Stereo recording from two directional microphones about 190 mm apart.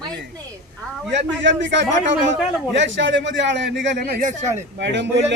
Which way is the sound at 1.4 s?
70° right (ahead or behind).